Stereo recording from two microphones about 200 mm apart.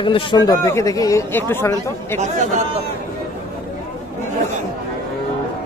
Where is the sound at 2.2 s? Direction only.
35° right (ahead or behind).